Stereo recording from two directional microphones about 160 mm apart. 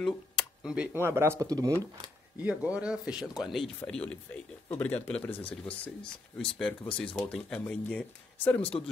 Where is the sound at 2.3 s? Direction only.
10° right (ahead or behind).